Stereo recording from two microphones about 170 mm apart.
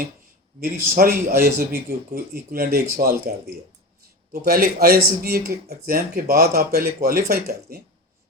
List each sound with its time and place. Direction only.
0.6 s speech: 60° right (ahead or behind)